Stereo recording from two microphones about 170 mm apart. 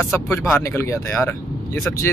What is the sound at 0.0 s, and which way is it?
Speech, 15° left (ahead or behind).